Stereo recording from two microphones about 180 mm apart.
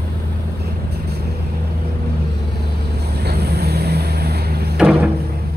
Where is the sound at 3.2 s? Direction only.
60° right (ahead or behind).